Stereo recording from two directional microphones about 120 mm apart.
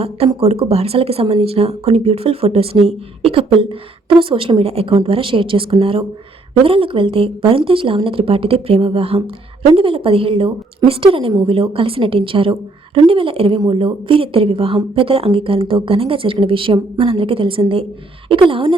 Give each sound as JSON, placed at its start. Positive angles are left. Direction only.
{"t": 0.3, "sound": "a woman's voice", "side_deg": -55}